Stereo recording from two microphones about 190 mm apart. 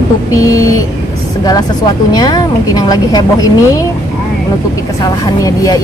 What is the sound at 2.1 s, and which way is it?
A woman's voice, 20° left (ahead or behind).